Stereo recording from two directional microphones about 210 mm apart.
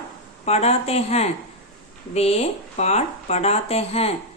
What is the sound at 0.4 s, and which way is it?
A woman's voice, 30° left (ahead or behind).